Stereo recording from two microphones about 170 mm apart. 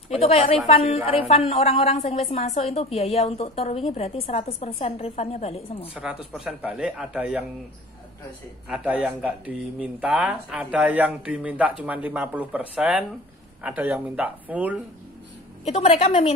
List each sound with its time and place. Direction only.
0.1 s a woman's voice: 35° left (ahead or behind)
5.9 s speech: 5° right (ahead or behind)
8.6 s speech: 5° right (ahead or behind)
15.6 s a woman's voice: 40° left (ahead or behind)